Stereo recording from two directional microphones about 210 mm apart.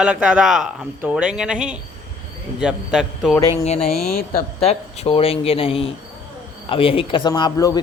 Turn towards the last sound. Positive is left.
turn(degrees=20)  # may be behind; listen again after turning